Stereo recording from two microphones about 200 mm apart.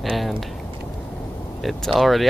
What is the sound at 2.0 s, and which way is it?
Speech, centre (ahead or behind).